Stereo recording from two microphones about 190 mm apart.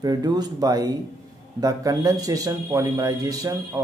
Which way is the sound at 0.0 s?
20° right (ahead or behind).